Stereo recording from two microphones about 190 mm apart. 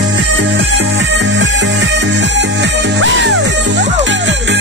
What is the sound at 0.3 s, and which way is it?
Music, 80° right.